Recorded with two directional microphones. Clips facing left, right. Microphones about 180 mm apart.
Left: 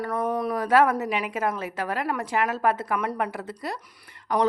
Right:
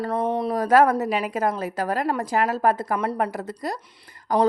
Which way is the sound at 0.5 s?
40° right (ahead or behind).